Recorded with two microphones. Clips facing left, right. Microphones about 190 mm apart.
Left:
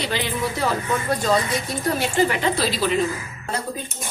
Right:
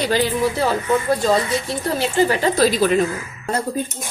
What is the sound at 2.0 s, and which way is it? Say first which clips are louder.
Speech: right 4 dB; 35° right (ahead or behind).